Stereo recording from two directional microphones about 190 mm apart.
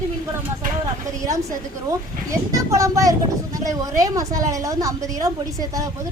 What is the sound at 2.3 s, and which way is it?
A woman's voice, 15° right (ahead or behind).